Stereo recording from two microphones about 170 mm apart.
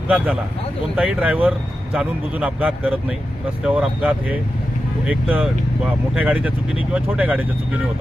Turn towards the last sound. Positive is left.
turn(degrees=-10)  # may be behind; listen again after turning